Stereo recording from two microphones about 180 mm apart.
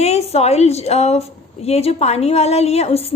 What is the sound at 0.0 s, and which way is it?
A woman's voice, 35° left (ahead or behind).